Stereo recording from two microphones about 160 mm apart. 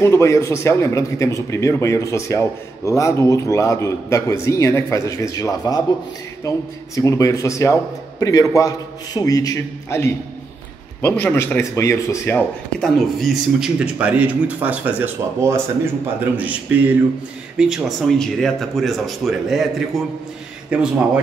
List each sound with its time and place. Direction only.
0.0 s a man's voice: 15° left (ahead or behind)
11.2 s speech: 15° left (ahead or behind); by 21.2 s 5° right (ahead or behind)